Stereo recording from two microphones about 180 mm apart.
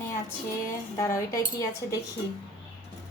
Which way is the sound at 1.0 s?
15° left (ahead or behind).